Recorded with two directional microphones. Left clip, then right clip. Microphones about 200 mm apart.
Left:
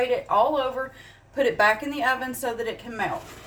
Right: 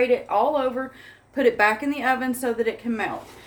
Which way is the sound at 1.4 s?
20° right (ahead or behind).